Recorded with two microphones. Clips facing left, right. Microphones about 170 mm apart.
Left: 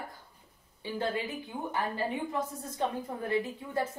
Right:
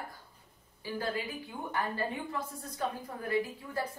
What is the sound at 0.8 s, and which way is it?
A woman's voice, 25° left (ahead or behind).